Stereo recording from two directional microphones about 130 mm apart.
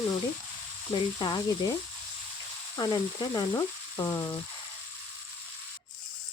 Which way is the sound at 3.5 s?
20° left (ahead or behind).